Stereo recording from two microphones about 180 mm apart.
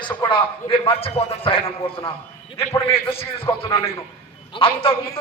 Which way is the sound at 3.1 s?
30° left (ahead or behind).